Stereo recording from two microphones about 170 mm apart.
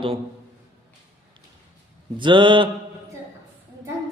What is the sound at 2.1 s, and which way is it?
Mantra, 30° right (ahead or behind).